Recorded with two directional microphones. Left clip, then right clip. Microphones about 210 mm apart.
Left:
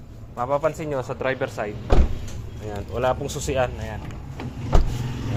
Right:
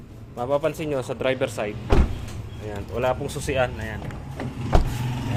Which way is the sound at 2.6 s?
10° left (ahead or behind).